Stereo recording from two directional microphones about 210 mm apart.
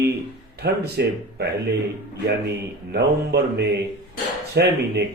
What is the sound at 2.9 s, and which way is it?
Speech, 50° right (ahead or behind).